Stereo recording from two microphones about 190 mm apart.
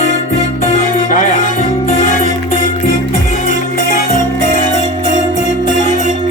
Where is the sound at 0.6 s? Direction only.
45° left (ahead or behind).